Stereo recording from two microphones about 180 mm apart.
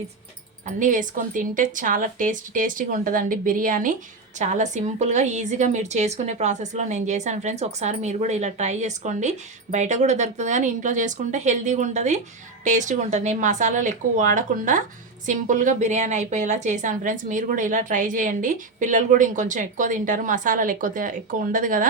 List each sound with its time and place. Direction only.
0.8 s a woman's voice: 45° right (ahead or behind)